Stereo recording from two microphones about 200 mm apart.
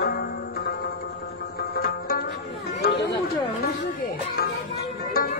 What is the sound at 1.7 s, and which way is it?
Music, 50° left (ahead or behind).